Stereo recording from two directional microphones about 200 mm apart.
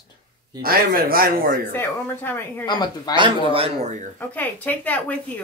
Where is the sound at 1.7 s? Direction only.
10° left (ahead or behind).